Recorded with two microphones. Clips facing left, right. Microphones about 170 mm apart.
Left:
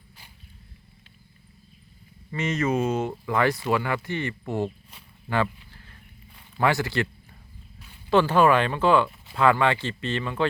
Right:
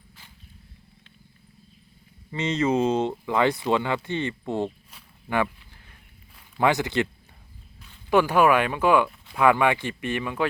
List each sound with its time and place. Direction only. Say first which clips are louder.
2.3 s speech: right 2 dB; 20° right (ahead or behind)
5.3 s a sound: even; 15° right (ahead or behind)
6.6 s speech: right 1 dB; 20° right (ahead or behind)
8.1 s speech: even; 10° right (ahead or behind)
9.0 s a sound: even; centre (ahead or behind)
9.4 s speech: right 1 dB; 15° right (ahead or behind)